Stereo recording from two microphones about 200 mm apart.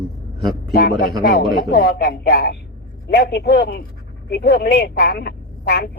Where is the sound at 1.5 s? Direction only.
50° left (ahead or behind).